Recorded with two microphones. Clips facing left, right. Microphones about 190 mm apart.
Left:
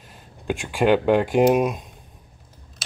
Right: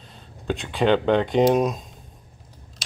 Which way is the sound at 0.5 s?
10° left (ahead or behind).